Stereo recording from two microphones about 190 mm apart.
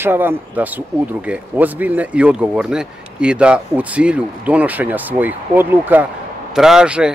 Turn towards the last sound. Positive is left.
turn(degrees=-5)  # may be behind; listen again after turning